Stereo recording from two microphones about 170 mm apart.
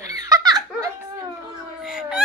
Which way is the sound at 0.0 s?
20° right (ahead or behind).